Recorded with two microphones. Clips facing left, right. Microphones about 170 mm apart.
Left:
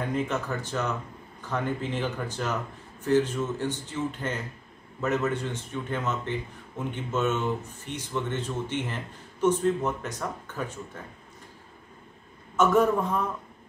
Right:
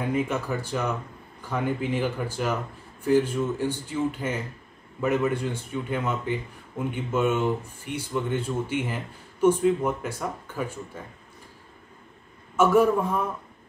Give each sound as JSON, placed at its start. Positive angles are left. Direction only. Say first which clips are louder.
{"t": 0.0, "sound": "speech", "louder": "right 2 dB", "side_deg": -10}
{"t": 12.5, "sound": "speech", "louder": "right 2 dB", "side_deg": -10}